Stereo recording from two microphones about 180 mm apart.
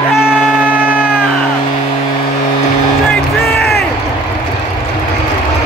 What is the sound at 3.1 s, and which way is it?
Music, centre (ahead or behind).